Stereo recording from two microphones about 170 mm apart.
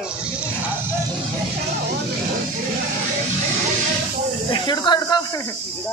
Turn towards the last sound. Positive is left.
turn(degrees=25)  # may be behind; listen again after turning